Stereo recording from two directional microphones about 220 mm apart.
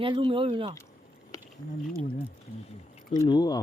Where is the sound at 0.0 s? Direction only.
20° right (ahead or behind).